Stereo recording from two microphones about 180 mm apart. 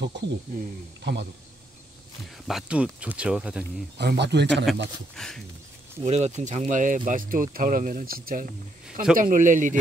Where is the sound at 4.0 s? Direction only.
70° right (ahead or behind).